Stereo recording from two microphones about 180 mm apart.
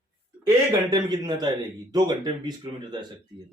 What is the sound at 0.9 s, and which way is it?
Speech, 25° right (ahead or behind).